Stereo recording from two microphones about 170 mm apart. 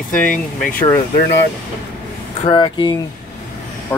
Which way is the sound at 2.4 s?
30° left (ahead or behind).